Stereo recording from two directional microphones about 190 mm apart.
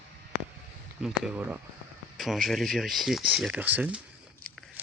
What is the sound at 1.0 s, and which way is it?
Speech, 5° right (ahead or behind).